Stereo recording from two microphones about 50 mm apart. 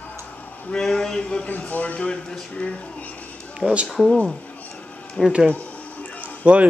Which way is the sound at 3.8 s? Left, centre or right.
Centre.